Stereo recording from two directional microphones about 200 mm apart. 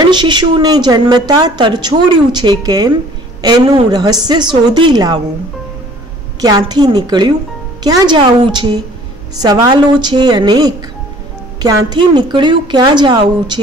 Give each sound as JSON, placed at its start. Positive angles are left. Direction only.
{"t": 0.1, "sound": "a woman's voice", "side_deg": -20}
{"t": 6.4, "sound": "a woman's voice", "side_deg": -20}